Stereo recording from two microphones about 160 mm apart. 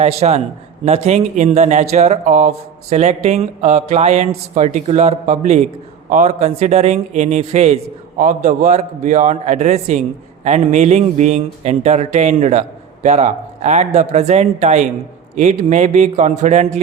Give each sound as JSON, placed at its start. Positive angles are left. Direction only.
{"t": 0.0, "sound": "a man's voice", "side_deg": -40}